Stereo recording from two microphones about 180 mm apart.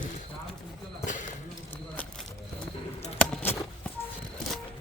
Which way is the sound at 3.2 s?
10° left (ahead or behind).